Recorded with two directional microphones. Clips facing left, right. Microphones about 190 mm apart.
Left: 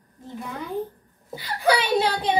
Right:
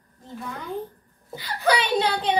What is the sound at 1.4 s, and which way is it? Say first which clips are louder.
Speech: left 1 dB; 10° left (ahead or behind).